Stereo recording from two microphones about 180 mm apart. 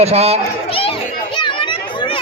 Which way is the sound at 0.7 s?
30° left (ahead or behind).